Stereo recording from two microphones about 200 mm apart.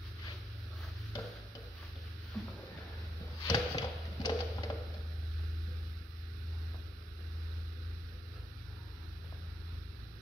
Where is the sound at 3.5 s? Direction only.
20° left (ahead or behind).